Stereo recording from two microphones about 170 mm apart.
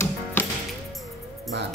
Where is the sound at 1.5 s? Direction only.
90° right.